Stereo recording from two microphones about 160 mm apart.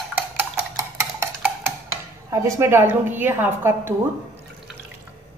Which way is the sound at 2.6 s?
15° right (ahead or behind).